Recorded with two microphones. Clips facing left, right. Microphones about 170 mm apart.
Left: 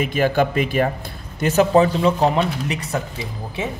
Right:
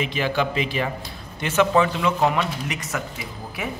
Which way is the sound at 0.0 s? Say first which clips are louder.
Left 5 dB; 45° left (ahead or behind).